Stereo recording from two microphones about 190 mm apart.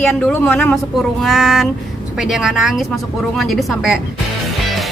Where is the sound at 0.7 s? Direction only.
Centre (ahead or behind).